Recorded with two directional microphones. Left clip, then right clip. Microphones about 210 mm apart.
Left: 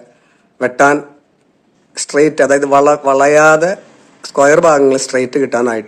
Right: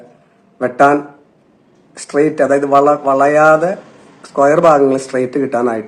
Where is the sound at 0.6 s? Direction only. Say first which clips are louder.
Even; 40° left (ahead or behind).